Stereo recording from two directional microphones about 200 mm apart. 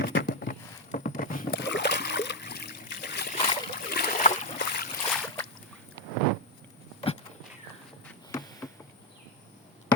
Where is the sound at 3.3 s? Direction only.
30° left (ahead or behind).